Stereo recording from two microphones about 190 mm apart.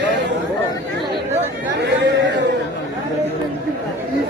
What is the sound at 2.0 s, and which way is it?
Chatter, 65° right (ahead or behind).